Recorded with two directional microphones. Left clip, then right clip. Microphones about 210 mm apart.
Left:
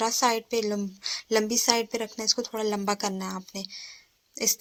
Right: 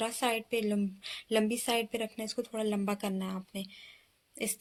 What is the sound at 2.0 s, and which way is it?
Speech, 10° left (ahead or behind).